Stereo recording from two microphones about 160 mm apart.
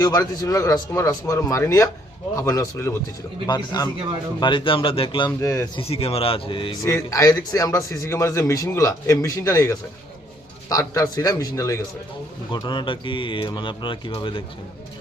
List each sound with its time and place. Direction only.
0.0 s a man's voice: 25° left (ahead or behind)
5.4 s a man's voice: 20° left (ahead or behind)
5.8 s speech: 40° left (ahead or behind)
6.8 s a man's voice: 20° left (ahead or behind)